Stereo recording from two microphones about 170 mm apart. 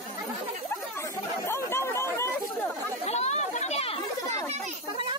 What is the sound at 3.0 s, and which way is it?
Chatter, 40° left (ahead or behind).